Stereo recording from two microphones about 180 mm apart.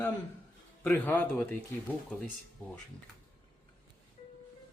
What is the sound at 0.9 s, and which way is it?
Speech, 10° left (ahead or behind).